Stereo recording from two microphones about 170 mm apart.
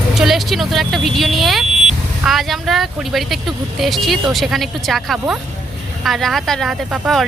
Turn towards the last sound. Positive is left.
turn(degrees=0)  # may be behind; listen again after turning